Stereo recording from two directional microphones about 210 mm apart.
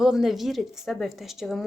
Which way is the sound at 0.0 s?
Centre (ahead or behind).